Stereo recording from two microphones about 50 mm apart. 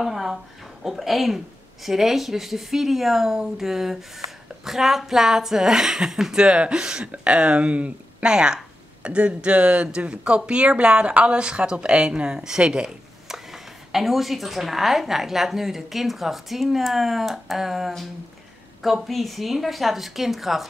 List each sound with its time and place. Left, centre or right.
0.0 s a sound: centre
0.8 s speech: centre
19.0 s speech: centre